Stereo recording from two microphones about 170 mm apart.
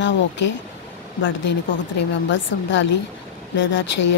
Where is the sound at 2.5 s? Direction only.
90° left.